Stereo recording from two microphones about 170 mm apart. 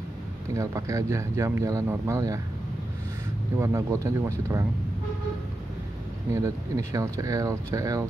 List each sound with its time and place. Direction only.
0.6 s speech: 20° right (ahead or behind)
3.5 s speech: 15° right (ahead or behind)
6.3 s speech: 15° right (ahead or behind)